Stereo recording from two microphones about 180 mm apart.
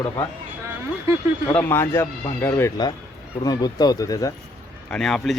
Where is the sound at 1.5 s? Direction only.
10° left (ahead or behind).